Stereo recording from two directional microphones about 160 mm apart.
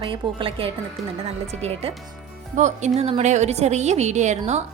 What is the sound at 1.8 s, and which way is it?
A woman's voice, 40° right (ahead or behind).